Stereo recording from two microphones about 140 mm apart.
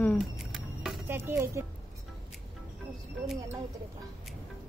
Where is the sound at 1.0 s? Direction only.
15° right (ahead or behind).